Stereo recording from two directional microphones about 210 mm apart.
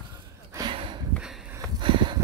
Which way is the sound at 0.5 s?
20° right (ahead or behind).